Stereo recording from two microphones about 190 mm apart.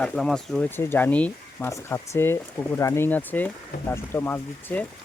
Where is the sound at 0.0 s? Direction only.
Centre (ahead or behind).